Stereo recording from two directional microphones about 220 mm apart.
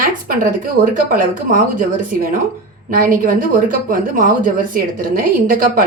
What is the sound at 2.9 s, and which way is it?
Speech, 40° right (ahead or behind).